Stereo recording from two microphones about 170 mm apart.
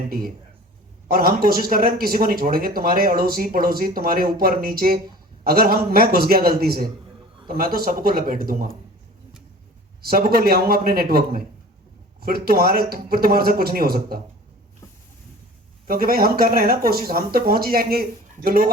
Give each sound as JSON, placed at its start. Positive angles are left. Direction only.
{"t": 0.1, "sound": "a man's voice", "side_deg": -60}
{"t": 10.0, "sound": "a man's voice", "side_deg": -65}
{"t": 15.9, "sound": "a man's voice", "side_deg": -60}